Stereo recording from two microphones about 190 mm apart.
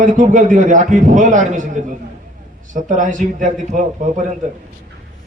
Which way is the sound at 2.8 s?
40° right (ahead or behind).